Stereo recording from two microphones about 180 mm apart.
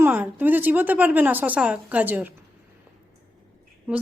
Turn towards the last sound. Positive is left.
turn(degrees=-10)  # may be behind; listen again after turning